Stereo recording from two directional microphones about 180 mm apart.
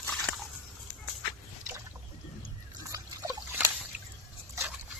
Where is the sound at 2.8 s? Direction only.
15° right (ahead or behind).